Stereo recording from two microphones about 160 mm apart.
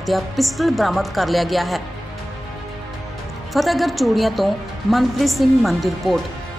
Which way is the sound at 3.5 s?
Centre (ahead or behind).